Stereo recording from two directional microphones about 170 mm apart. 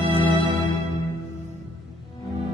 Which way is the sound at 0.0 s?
25° left (ahead or behind).